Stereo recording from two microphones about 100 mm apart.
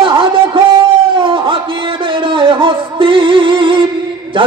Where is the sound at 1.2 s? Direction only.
60° right (ahead or behind).